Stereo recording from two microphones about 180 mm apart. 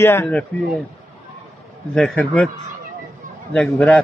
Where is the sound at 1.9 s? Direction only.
Centre (ahead or behind).